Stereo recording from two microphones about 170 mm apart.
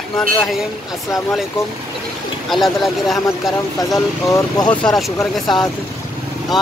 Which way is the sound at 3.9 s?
20° left (ahead or behind).